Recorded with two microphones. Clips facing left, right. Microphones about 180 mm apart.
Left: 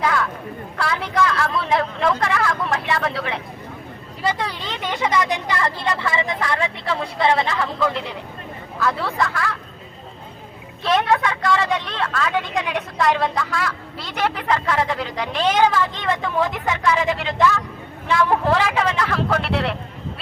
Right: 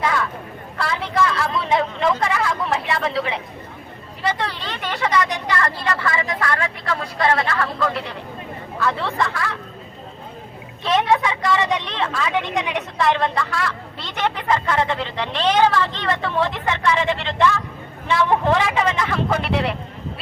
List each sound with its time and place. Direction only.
0.0 s a sound: centre (ahead or behind)
0.8 s speech: centre (ahead or behind)
4.3 s vehicle: 10° left (ahead or behind)
5.5 s speech: 15° left (ahead or behind)
8.8 s a woman's voice: 5° left (ahead or behind)
10.8 s a woman's voice: 5° right (ahead or behind)